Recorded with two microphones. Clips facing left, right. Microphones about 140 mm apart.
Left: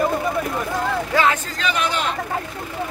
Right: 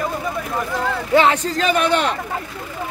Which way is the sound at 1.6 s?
50° right (ahead or behind).